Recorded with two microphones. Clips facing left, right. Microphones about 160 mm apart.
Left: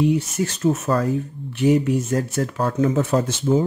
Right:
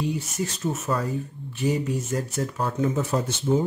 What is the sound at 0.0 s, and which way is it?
Speech, 65° left (ahead or behind).